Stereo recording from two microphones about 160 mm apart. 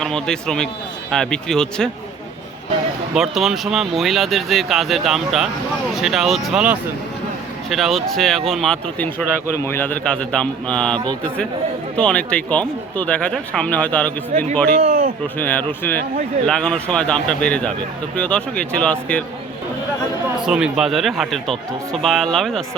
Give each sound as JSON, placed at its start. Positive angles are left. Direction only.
{"t": 0.0, "sound": "speech", "side_deg": 5}
{"t": 3.2, "sound": "speech", "side_deg": 0}
{"t": 14.3, "sound": "a man's voice", "side_deg": -50}
{"t": 14.8, "sound": "a sound", "side_deg": -40}
{"t": 15.4, "sound": "speech", "side_deg": 10}
{"t": 20.4, "sound": "speech", "side_deg": -5}